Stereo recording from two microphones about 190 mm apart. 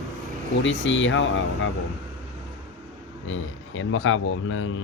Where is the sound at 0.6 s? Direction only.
80° left.